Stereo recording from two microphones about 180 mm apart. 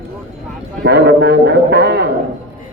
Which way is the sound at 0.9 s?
65° right (ahead or behind).